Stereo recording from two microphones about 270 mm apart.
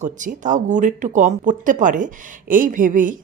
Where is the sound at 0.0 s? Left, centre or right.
Right.